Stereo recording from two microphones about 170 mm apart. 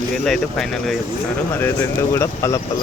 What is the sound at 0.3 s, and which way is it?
Speech, centre (ahead or behind).